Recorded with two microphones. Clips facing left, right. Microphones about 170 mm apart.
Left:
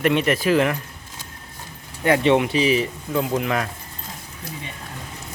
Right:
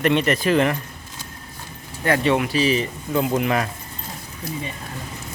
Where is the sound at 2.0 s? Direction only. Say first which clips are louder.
Left 2 dB; 20° left (ahead or behind).